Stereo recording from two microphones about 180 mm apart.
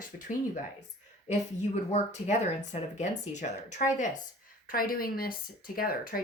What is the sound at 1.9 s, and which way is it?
Speech, 40° left (ahead or behind).